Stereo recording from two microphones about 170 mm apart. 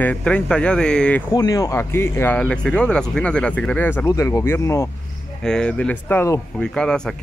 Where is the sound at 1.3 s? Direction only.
20° left (ahead or behind).